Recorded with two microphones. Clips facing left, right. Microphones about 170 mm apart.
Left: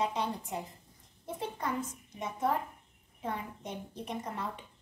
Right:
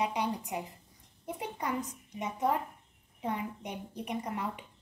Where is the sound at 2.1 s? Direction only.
15° right (ahead or behind).